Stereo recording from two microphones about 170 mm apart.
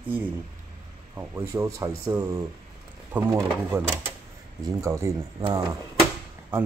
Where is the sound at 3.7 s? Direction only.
10° right (ahead or behind).